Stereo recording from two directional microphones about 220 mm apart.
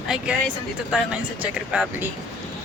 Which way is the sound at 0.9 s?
5° right (ahead or behind).